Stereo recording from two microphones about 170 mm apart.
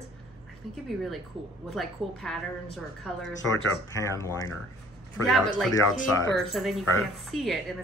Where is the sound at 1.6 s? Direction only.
Centre (ahead or behind).